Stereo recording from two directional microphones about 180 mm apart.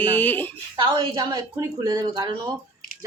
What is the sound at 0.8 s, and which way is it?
Speech, 25° right (ahead or behind).